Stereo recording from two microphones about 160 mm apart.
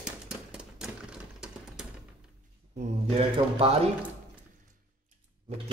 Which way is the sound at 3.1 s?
40° right (ahead or behind).